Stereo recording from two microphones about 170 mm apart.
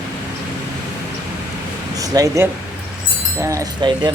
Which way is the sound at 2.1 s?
20° right (ahead or behind).